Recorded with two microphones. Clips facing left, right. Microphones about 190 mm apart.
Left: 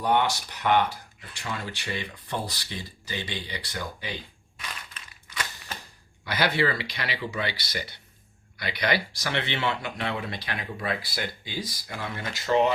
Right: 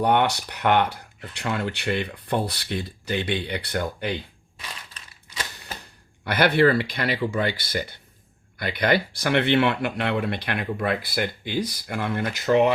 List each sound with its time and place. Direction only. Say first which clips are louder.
0.0 s speech: right 4 dB; 60° right (ahead or behind)
4.9 s typewriter: right 1 dB; 25° right (ahead or behind)
6.2 s speech: right 7 dB; 55° right (ahead or behind)